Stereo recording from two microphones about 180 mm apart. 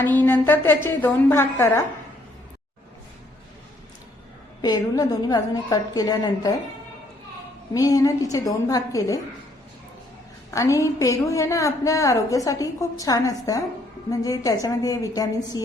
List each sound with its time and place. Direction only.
0.0 s a woman's voice: 10° left (ahead or behind)
4.6 s a woman's voice: 20° left (ahead or behind)
7.7 s a woman's voice: 20° left (ahead or behind)
10.5 s a woman's voice: 15° left (ahead or behind)